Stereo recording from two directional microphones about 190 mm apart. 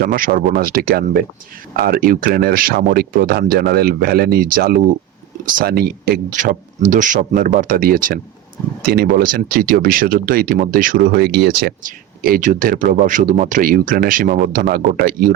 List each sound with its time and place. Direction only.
0.0 s speech: 50° right (ahead or behind)